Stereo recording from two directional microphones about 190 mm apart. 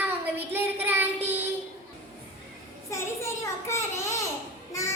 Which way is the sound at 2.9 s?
15° left (ahead or behind).